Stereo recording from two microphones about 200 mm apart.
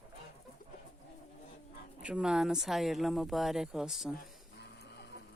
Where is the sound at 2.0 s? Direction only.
5° right (ahead or behind).